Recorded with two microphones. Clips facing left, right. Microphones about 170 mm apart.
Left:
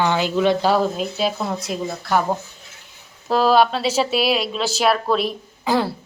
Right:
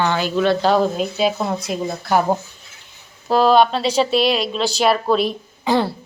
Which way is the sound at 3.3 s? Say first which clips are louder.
Right 2 dB; centre (ahead or behind).